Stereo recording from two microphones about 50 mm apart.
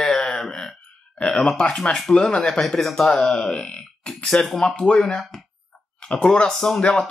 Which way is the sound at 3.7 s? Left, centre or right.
Centre.